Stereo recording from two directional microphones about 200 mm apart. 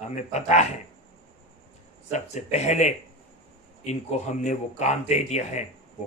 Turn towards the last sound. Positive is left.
turn(degrees=35)  # may be behind; listen again after turning